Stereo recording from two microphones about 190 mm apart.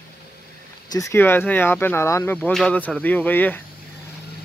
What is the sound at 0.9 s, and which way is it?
Speech, 15° left (ahead or behind).